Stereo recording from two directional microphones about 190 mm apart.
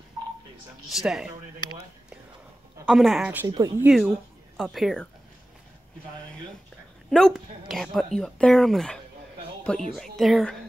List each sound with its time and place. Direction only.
0.8 s speech: centre (ahead or behind)
2.8 s speech: centre (ahead or behind)
3.4 s speech: 20° right (ahead or behind)
3.8 s speech: 5° right (ahead or behind)
7.1 s speech: centre (ahead or behind)